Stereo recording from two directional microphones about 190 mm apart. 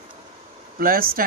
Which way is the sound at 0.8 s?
50° right (ahead or behind).